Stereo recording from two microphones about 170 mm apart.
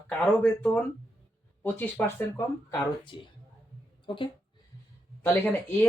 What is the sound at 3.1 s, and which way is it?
Speech, 30° left (ahead or behind).